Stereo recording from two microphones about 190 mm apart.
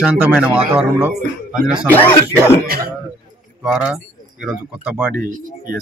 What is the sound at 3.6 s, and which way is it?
Speech, 5° right (ahead or behind).